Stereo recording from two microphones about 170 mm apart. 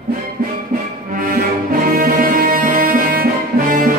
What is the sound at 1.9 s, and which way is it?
Music, 60° right (ahead or behind).